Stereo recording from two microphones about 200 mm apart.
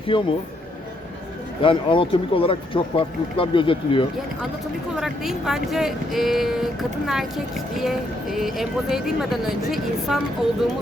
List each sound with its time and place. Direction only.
0.1 s speech: 25° left (ahead or behind)
1.6 s speech: 25° left (ahead or behind)
4.9 s speech: centre (ahead or behind)